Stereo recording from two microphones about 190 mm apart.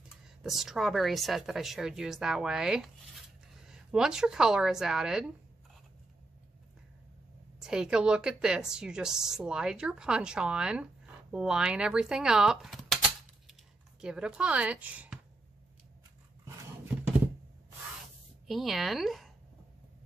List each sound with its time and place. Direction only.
0.4 s a woman's voice: centre (ahead or behind)
7.6 s a woman's voice: 5° right (ahead or behind)
14.0 s a woman's voice: 5° right (ahead or behind)
18.5 s a woman's voice: centre (ahead or behind)